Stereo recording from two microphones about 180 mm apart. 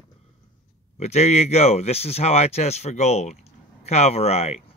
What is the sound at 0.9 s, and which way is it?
Speech, 40° left (ahead or behind).